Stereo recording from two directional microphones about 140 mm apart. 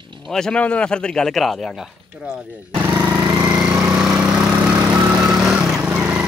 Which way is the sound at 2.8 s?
15° right (ahead or behind).